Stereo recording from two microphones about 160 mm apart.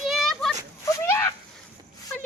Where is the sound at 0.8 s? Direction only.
20° left (ahead or behind).